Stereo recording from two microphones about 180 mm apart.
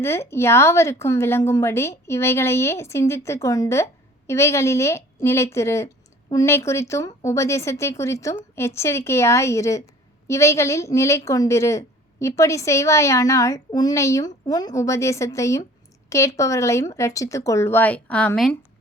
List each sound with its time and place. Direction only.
0.0 s a woman's voice: 15° left (ahead or behind)